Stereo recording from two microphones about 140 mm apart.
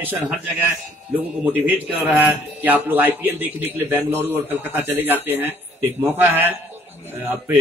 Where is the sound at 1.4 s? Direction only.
10° right (ahead or behind).